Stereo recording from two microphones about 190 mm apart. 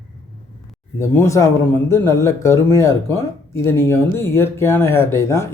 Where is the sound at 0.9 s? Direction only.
15° left (ahead or behind).